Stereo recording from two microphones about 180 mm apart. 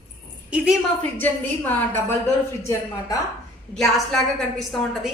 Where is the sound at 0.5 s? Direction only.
5° right (ahead or behind).